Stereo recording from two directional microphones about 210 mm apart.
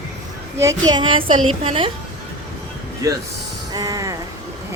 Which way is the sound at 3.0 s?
15° right (ahead or behind).